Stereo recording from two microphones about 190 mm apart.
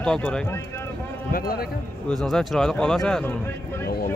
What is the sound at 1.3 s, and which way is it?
Speech, 50° left (ahead or behind).